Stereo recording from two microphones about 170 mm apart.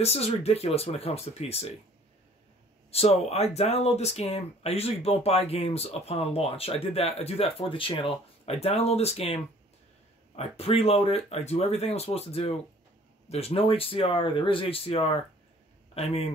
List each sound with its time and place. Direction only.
0.0 s speech: 40° left (ahead or behind)
2.9 s a man's voice: 35° left (ahead or behind)